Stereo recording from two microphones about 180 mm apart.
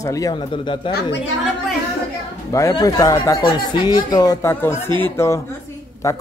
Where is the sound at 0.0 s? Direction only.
20° left (ahead or behind).